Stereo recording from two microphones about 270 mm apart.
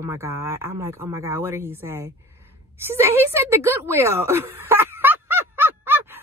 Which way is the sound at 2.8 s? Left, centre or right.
Centre.